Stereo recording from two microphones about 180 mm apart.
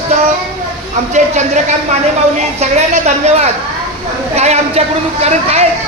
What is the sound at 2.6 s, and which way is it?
Speech, 35° right (ahead or behind).